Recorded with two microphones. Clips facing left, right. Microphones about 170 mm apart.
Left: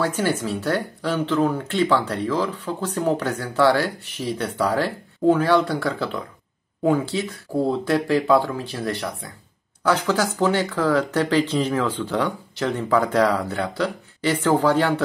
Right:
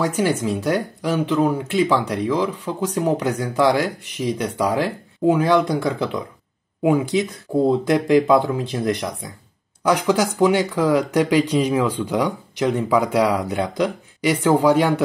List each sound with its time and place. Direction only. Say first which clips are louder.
0.0 s speech: right 2 dB; 15° right (ahead or behind)